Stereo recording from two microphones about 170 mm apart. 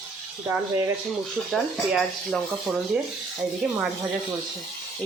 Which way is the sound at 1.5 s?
Centre (ahead or behind).